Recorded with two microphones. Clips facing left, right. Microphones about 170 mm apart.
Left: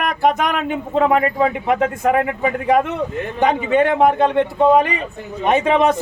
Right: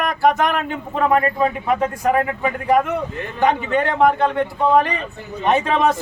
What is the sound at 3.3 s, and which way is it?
A man's voice, 20° left (ahead or behind).